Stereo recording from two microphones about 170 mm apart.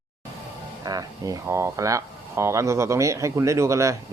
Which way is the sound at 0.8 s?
20° right (ahead or behind).